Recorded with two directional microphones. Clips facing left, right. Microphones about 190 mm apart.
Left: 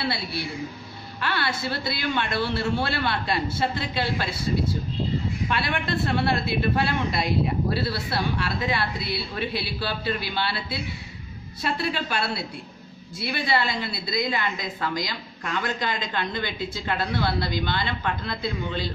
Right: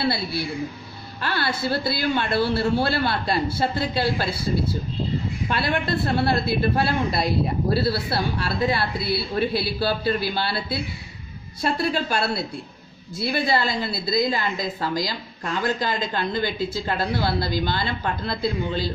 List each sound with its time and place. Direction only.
1.2 s a woman's voice: 35° right (ahead or behind)
5.5 s a woman's voice: 40° right (ahead or behind)